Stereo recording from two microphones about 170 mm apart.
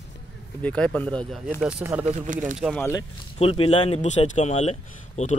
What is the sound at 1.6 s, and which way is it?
Speech, 5° right (ahead or behind).